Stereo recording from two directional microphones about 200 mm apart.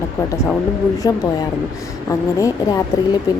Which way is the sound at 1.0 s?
20° left (ahead or behind).